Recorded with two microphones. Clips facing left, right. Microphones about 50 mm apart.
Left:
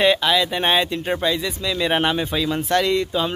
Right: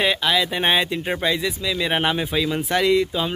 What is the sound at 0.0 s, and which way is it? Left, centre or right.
Speech, centre.